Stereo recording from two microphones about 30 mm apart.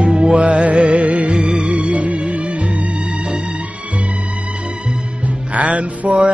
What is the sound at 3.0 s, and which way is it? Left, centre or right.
Music, right.